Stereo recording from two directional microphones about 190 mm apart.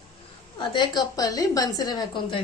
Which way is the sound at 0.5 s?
25° left (ahead or behind).